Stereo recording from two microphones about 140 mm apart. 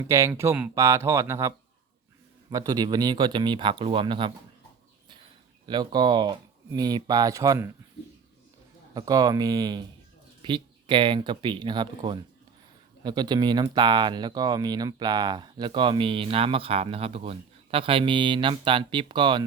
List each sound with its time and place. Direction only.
0.1 s speech: 20° right (ahead or behind); by 4.3 s 35° right (ahead or behind)
5.6 s speech: 30° right (ahead or behind)
9.0 s speech: 25° right (ahead or behind)